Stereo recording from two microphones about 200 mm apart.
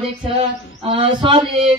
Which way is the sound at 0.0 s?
30° right (ahead or behind).